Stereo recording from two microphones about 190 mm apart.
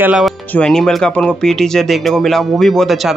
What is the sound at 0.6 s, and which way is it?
Speech, 5° left (ahead or behind).